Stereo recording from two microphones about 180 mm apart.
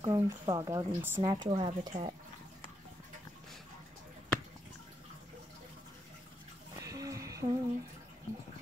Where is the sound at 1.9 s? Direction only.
40° right (ahead or behind).